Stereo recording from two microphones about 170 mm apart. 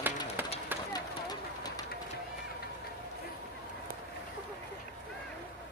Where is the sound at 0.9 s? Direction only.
25° left (ahead or behind).